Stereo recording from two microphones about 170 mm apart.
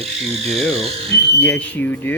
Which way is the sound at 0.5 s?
Centre (ahead or behind).